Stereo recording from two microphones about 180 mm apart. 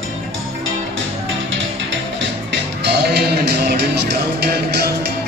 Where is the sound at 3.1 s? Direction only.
65° right (ahead or behind).